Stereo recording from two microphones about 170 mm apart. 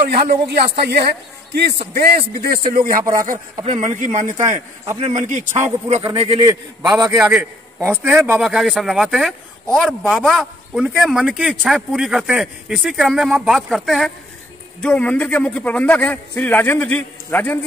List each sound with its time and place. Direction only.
0.1 s a man's voice: 70° right (ahead or behind)
2.0 s speech: 65° right (ahead or behind); by 6.4 s 30° right (ahead or behind)
6.4 s a man's voice: 20° right (ahead or behind)
7.2 s a man's voice: 10° right (ahead or behind); by 17.6 s 10° left (ahead or behind)